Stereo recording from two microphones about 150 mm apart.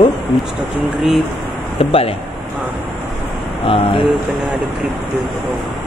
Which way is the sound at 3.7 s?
35° left (ahead or behind).